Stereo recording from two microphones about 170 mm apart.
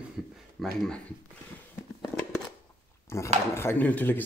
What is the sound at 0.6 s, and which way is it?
Speech, 5° left (ahead or behind).